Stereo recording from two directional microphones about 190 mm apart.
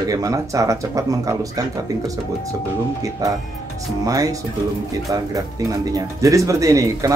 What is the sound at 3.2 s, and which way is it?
Speech, 20° right (ahead or behind).